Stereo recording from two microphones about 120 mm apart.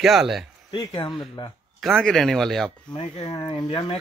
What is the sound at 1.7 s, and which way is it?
Speech, centre (ahead or behind).